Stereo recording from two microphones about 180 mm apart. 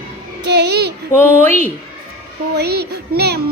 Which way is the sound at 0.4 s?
70° right (ahead or behind).